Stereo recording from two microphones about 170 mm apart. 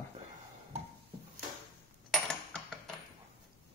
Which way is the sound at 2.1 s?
5° left (ahead or behind).